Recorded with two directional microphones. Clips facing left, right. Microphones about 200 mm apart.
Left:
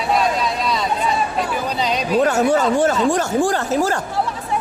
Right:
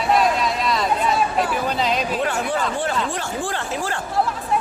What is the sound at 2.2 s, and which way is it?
Speech, 45° left (ahead or behind).